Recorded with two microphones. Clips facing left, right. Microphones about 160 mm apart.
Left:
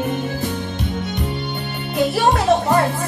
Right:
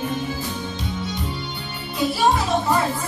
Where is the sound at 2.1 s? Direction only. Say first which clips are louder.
Left 3 dB; 60° left (ahead or behind).